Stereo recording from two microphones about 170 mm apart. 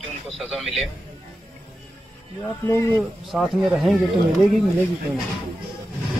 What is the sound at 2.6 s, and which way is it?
Speech, 15° left (ahead or behind).